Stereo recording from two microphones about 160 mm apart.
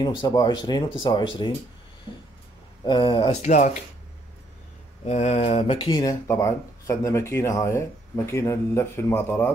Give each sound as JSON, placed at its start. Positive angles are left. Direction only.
{"t": 0.2, "sound": "speech", "side_deg": 25}
{"t": 2.8, "sound": "mantra", "side_deg": 30}
{"t": 3.4, "sound": "speech", "side_deg": 45}
{"t": 5.0, "sound": "mantra", "side_deg": 45}
{"t": 5.9, "sound": "speech", "side_deg": 25}